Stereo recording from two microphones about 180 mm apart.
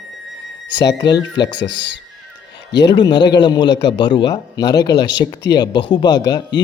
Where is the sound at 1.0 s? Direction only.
20° left (ahead or behind).